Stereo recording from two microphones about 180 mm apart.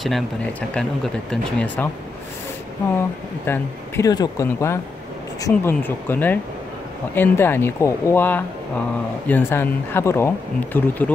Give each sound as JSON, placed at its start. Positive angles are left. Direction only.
{"t": 0.0, "sound": "speech", "side_deg": 5}
{"t": 3.4, "sound": "speech", "side_deg": 15}